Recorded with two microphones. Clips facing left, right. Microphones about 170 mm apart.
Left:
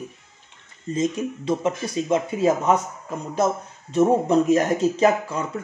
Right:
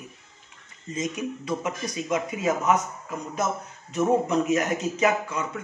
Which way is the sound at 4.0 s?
30° left (ahead or behind).